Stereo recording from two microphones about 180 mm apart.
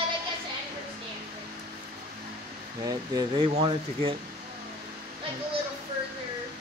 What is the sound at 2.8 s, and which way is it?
Speech, 20° right (ahead or behind).